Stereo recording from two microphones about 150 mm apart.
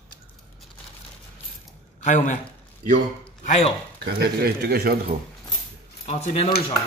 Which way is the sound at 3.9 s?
90° right.